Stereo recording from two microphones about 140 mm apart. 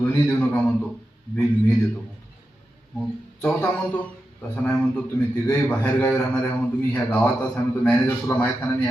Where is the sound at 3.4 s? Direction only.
10° left (ahead or behind).